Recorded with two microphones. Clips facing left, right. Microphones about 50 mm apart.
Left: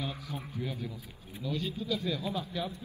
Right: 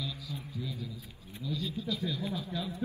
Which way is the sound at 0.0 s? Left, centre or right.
Left.